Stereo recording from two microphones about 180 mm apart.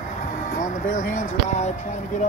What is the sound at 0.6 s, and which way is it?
Speech, 45° left (ahead or behind).